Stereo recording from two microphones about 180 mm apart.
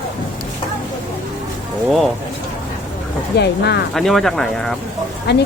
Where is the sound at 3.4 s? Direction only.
65° left (ahead or behind).